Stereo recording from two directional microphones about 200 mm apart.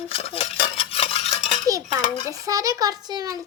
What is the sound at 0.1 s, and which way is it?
Cutlery, 30° left (ahead or behind).